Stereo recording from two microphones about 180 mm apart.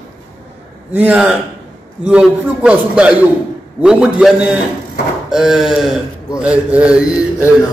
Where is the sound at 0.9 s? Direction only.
5° right (ahead or behind).